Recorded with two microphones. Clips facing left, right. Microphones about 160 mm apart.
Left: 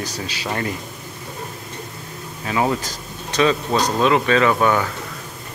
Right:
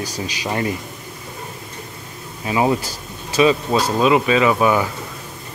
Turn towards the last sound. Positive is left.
turn(degrees=-10)  # may be behind; listen again after turning